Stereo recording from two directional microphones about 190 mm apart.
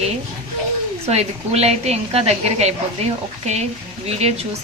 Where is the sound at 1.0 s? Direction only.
35° right (ahead or behind).